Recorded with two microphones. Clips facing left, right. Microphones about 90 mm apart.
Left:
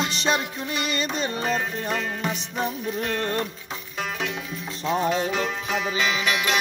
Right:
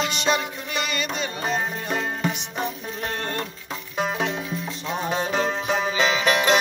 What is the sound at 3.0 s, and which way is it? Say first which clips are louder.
Music: left 1 dB; 30° right (ahead or behind).